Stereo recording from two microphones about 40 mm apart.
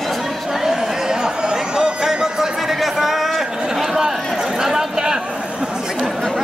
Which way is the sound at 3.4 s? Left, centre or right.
Centre.